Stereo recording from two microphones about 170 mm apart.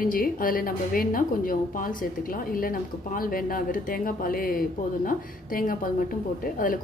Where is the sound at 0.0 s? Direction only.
55° left (ahead or behind).